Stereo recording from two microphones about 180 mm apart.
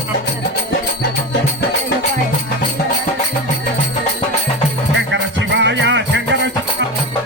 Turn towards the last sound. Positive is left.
turn(degrees=-85)